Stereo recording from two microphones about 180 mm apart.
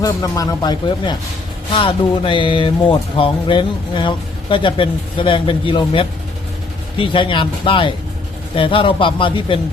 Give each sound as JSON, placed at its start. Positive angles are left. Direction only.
{"t": 0.0, "sound": "speech", "side_deg": 20}